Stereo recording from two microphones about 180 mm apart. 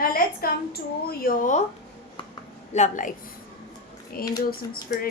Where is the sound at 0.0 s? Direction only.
55° left (ahead or behind).